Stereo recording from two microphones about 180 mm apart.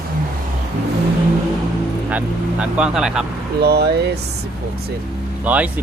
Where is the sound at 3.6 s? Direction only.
65° right (ahead or behind).